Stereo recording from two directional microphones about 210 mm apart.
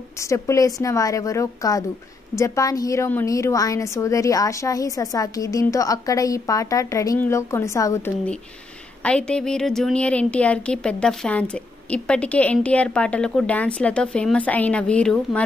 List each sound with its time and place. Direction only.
0.2 s a woman's voice: 15° left (ahead or behind)